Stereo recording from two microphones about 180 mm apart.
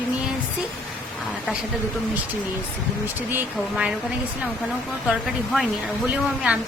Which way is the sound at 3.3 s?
5° right (ahead or behind).